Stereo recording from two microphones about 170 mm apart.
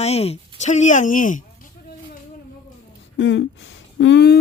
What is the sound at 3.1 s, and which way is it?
Speech, 90° left.